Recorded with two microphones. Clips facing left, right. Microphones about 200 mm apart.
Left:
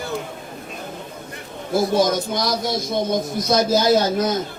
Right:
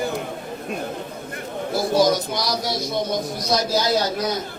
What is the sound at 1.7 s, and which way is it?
A man's voice, 50° left (ahead or behind).